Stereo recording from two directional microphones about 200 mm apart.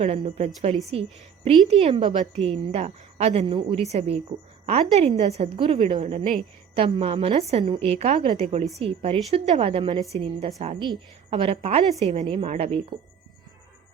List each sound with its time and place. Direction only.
0.0 s a woman's voice: 30° right (ahead or behind)
6.0 s a woman's voice: 35° right (ahead or behind)
6.7 s a woman's voice: 25° right (ahead or behind)